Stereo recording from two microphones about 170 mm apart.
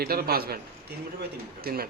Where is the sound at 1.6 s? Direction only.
65° right (ahead or behind).